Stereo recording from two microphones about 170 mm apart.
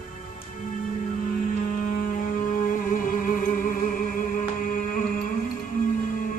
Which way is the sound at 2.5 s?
55° left (ahead or behind).